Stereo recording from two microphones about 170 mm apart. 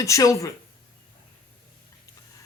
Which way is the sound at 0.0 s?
20° left (ahead or behind).